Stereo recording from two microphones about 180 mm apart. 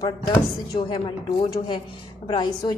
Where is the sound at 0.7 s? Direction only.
25° left (ahead or behind).